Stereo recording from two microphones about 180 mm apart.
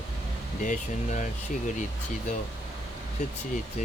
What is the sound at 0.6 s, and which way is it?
Speech, 45° left (ahead or behind).